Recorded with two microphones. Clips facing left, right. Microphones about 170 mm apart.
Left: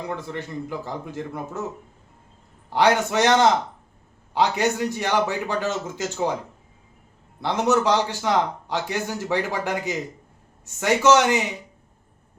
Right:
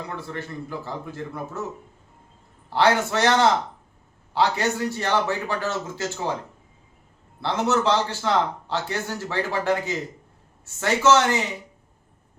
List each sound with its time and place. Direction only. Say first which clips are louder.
0.2 s speech: left 2 dB; 15° left (ahead or behind)
2.6 s speech: left 1 dB; 15° left (ahead or behind)
7.4 s speech: left 2 dB; 15° left (ahead or behind)